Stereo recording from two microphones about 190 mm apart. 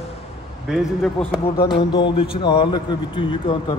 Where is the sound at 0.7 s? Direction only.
Centre (ahead or behind).